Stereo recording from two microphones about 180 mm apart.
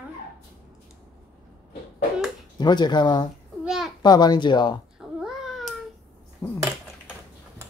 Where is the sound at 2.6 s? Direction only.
25° left (ahead or behind).